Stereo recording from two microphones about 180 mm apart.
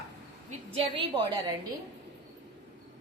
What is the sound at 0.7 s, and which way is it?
Speech, 35° right (ahead or behind).